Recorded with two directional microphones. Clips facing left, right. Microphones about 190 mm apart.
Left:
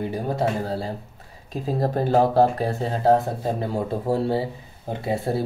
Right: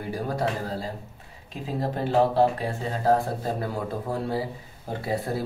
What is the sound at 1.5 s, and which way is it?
Speech, 40° left (ahead or behind).